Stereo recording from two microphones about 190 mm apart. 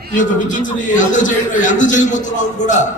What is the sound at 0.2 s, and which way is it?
A man's voice, 45° left (ahead or behind).